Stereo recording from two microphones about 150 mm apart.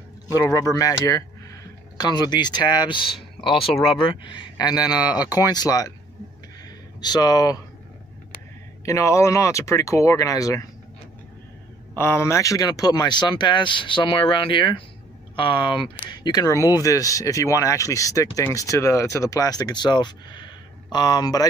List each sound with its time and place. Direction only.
0.4 s speech: 20° left (ahead or behind)
3.7 s speech: centre (ahead or behind)
4.0 s a man's voice: 30° left (ahead or behind)
7.0 s speech: 25° left (ahead or behind)
8.8 s speech: 20° left (ahead or behind)
11.9 s speech: 15° left (ahead or behind)